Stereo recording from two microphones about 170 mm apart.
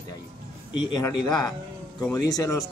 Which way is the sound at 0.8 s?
25° left (ahead or behind).